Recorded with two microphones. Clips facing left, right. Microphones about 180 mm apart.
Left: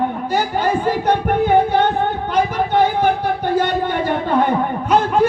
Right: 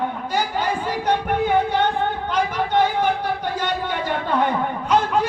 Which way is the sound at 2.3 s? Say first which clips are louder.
Left 4 dB; 50° left (ahead or behind).